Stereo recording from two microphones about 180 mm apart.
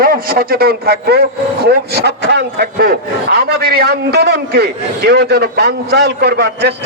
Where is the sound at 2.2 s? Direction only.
70° right (ahead or behind).